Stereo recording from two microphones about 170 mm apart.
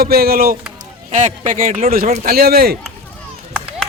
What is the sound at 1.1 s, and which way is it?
Speech, 45° right (ahead or behind).